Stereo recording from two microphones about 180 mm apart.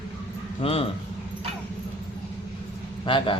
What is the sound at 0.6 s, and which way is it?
Speech, 30° left (ahead or behind).